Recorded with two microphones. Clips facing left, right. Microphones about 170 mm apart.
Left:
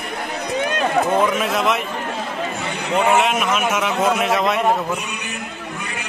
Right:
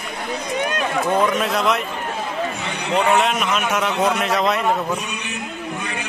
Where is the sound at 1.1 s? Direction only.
Centre (ahead or behind).